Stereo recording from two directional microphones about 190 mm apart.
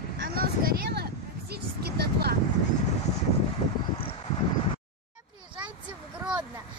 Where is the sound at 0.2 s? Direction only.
50° right (ahead or behind).